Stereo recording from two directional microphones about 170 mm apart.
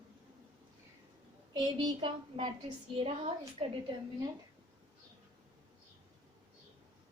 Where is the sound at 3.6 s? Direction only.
35° right (ahead or behind).